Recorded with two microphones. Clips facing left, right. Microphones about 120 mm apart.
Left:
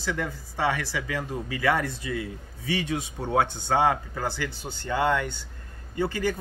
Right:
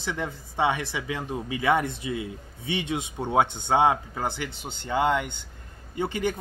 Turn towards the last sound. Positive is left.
turn(degrees=-20)  # may be behind; listen again after turning